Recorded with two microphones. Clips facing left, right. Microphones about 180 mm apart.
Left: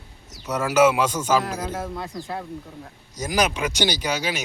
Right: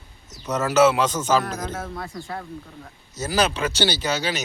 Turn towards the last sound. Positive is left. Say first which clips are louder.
# right 1 dB
turn(degrees=10)  # may be behind; listen again after turning